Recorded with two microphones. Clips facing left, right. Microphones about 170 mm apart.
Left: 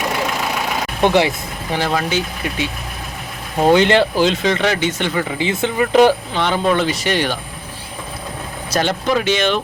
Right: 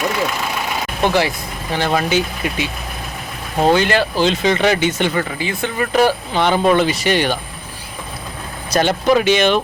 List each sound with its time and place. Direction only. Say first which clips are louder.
1.0 s speech: left 2 dB; 20° left (ahead or behind)
1.9 s speech: right 2 dB; 5° right (ahead or behind)
3.6 s speech: left 2 dB; 20° left (ahead or behind)
4.2 s speech: right 1 dB; centre (ahead or behind)
5.4 s speech: left 3 dB; 20° left (ahead or behind)
6.3 s speech: right 3 dB; 10° right (ahead or behind)
8.7 s speech: right 3 dB; 5° right (ahead or behind)